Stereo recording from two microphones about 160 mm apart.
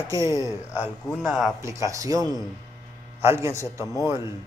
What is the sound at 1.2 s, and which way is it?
Speech, 5° right (ahead or behind).